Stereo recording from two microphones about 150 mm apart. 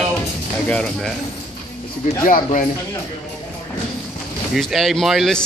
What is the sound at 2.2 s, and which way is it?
Speech, 65° left (ahead or behind).